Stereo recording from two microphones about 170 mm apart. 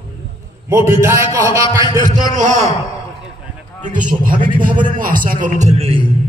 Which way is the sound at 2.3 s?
45° right (ahead or behind).